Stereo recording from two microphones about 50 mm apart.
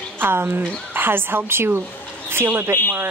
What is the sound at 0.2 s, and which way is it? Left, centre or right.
Speech, right.